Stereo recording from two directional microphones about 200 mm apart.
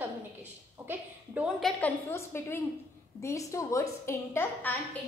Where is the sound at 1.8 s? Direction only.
10° left (ahead or behind).